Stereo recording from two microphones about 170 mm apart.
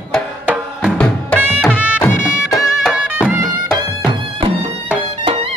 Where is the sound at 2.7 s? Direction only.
5° right (ahead or behind).